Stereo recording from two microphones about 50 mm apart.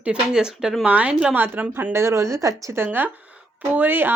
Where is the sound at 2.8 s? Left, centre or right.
Right.